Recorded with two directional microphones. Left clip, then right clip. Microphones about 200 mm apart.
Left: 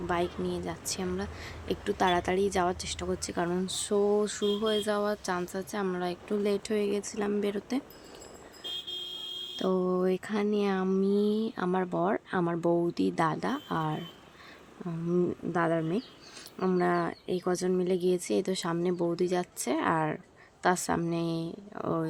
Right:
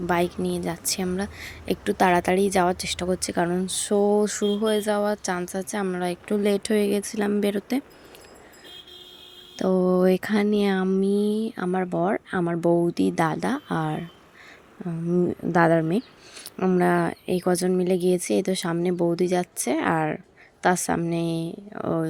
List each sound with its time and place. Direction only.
0.1 s speech: 25° right (ahead or behind)
9.6 s speech: 20° right (ahead or behind)
15.5 s speech: 30° right (ahead or behind)